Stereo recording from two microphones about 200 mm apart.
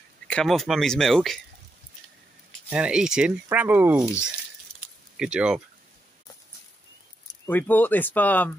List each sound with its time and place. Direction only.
0.3 s speech: 5° left (ahead or behind)
2.7 s speech: 5° right (ahead or behind)
4.7 s a sound: 5° right (ahead or behind)
7.2 s speech: 10° left (ahead or behind)